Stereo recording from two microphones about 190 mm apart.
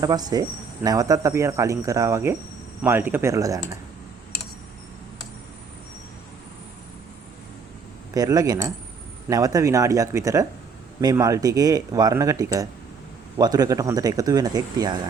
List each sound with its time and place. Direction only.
0.0 s speech: 20° right (ahead or behind)
8.1 s speech: 20° right (ahead or behind)